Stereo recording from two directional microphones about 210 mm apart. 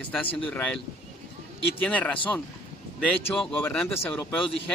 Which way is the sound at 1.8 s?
5° left (ahead or behind).